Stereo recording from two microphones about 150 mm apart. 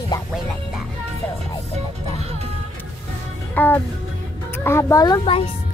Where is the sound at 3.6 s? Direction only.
10° left (ahead or behind).